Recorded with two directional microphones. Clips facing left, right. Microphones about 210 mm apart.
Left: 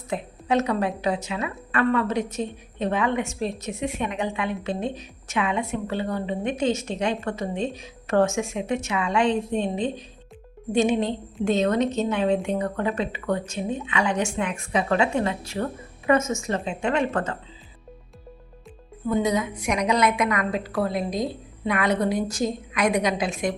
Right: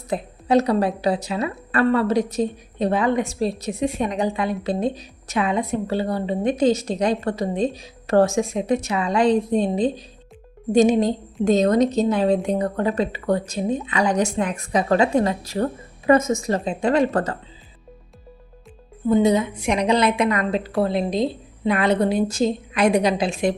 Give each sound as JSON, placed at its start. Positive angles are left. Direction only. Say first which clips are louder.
{"t": 0.1, "sound": "a woman's voice", "louder": "right 5 dB", "side_deg": -35}
{"t": 19.0, "sound": "a woman's voice", "louder": "right 6 dB", "side_deg": -25}